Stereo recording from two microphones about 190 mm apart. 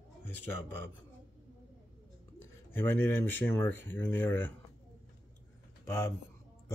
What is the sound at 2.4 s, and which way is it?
Speech, 10° left (ahead or behind).